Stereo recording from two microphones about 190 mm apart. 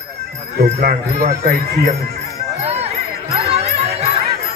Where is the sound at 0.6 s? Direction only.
50° right (ahead or behind).